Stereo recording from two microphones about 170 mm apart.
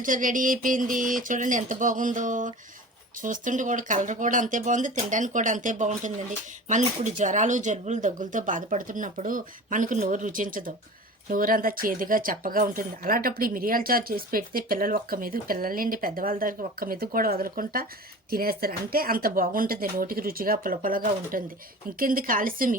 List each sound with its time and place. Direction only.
0.0 s speech: 50° right (ahead or behind)